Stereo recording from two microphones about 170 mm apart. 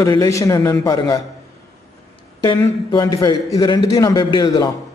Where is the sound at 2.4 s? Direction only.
25° left (ahead or behind).